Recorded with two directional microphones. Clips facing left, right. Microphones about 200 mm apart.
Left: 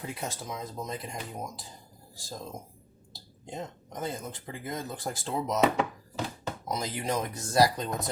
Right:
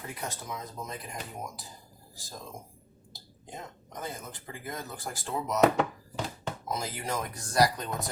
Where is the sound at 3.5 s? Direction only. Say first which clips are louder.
Left 5 dB; 20° left (ahead or behind).